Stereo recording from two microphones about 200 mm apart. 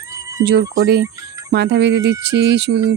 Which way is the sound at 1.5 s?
60° right (ahead or behind).